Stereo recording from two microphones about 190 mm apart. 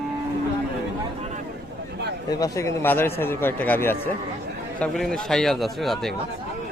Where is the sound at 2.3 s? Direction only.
20° left (ahead or behind); by 6.1 s centre (ahead or behind).